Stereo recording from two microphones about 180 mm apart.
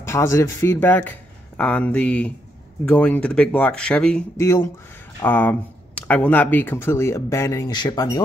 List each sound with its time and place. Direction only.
0.0 s speech: 15° left (ahead or behind)
4.4 s speech: 15° left (ahead or behind)